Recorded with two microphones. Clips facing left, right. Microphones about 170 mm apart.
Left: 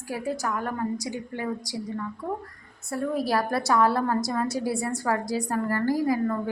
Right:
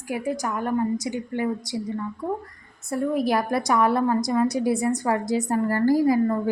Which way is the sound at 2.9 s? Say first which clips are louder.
Right 3 dB; 20° right (ahead or behind).